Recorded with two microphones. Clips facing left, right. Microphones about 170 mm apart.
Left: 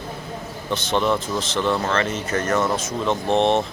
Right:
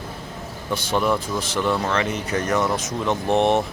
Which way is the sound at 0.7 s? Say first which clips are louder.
Even; 10° right (ahead or behind).